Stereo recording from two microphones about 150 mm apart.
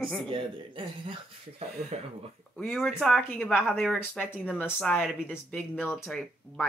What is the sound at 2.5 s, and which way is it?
Speech, 5° left (ahead or behind).